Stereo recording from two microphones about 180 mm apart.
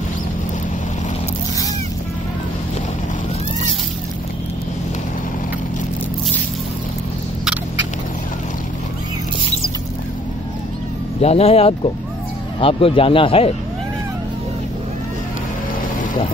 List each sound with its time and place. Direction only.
11.1 s speech: 35° left (ahead or behind)